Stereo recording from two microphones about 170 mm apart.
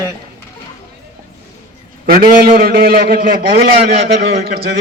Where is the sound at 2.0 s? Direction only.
55° right (ahead or behind).